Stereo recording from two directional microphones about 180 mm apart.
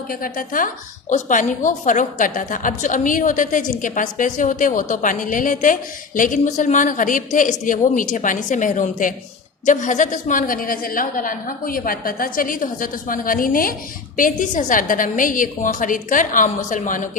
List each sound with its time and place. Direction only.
0.1 s a woman's voice: 50° left (ahead or behind)